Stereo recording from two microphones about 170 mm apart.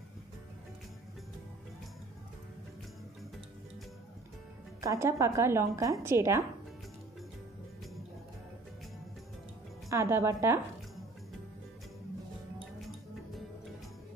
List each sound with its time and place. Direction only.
4.8 s a woman's voice: 15° right (ahead or behind)
9.8 s a woman's voice: 15° right (ahead or behind)